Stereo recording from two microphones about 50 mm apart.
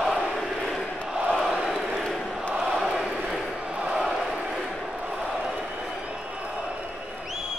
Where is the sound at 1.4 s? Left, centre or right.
Centre.